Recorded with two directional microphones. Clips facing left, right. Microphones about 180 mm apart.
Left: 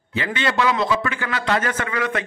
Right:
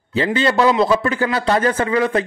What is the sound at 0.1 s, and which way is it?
A man's voice, 35° right (ahead or behind).